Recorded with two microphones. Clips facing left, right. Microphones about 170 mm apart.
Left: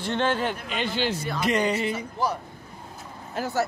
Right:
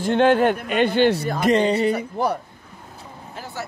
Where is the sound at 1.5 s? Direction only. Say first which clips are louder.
Right 7 dB; 30° right (ahead or behind).